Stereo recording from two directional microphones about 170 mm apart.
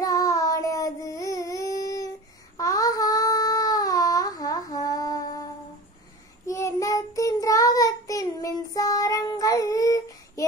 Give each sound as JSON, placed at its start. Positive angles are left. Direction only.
{"t": 0.0, "sound": "child singing", "side_deg": 20}
{"t": 2.5, "sound": "a sound", "side_deg": 20}
{"t": 6.4, "sound": "child singing", "side_deg": 20}